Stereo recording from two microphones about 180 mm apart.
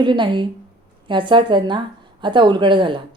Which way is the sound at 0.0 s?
25° right (ahead or behind).